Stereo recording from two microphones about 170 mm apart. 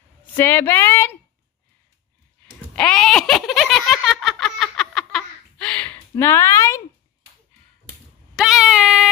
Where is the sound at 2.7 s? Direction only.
5° left (ahead or behind).